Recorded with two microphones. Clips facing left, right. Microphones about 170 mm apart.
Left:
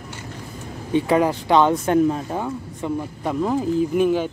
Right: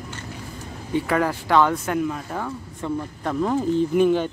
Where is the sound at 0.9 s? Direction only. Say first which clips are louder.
Left 4 dB; 20° left (ahead or behind).